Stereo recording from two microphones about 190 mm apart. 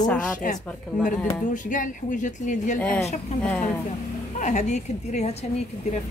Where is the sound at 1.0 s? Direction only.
45° left (ahead or behind).